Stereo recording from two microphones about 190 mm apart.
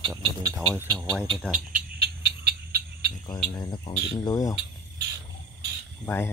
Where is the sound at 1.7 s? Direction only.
50° right (ahead or behind).